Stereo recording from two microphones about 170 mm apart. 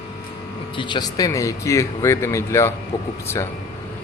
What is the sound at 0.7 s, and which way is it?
Speech, 30° left (ahead or behind).